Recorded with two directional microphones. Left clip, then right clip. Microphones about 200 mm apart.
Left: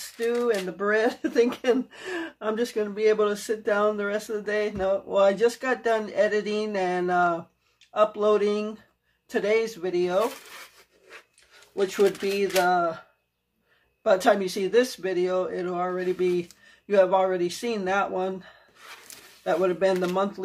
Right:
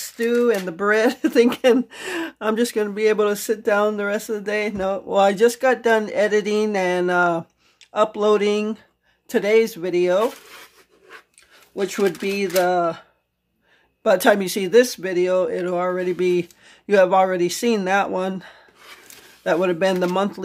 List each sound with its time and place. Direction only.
0.2 s speech: 60° right (ahead or behind)
11.9 s speech: 55° right (ahead or behind)
14.0 s speech: 55° right (ahead or behind)